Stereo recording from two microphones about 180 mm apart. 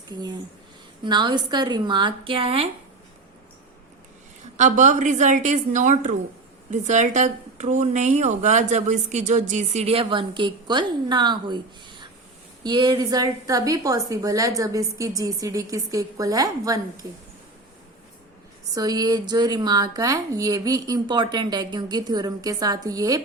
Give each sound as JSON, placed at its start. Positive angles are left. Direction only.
{"t": 0.1, "sound": "a woman's voice", "side_deg": -25}
{"t": 4.5, "sound": "a woman's voice", "side_deg": -40}
{"t": 18.7, "sound": "a woman's voice", "side_deg": -20}